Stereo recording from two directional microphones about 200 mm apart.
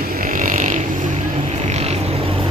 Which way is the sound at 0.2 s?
40° right (ahead or behind).